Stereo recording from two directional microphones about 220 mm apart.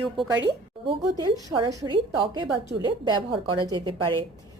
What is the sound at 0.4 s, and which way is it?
A woman's voice, 20° right (ahead or behind).